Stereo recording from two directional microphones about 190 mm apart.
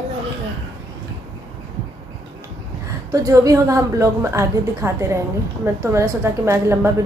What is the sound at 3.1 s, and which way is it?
A woman's voice, 15° right (ahead or behind).